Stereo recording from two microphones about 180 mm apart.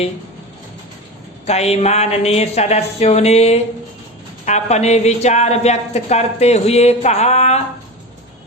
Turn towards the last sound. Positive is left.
turn(degrees=40)  # may be behind; listen again after turning